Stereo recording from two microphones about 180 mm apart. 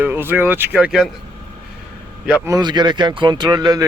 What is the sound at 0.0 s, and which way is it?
Speech, 10° right (ahead or behind).